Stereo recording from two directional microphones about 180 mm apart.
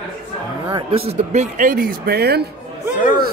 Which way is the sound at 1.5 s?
50° right (ahead or behind).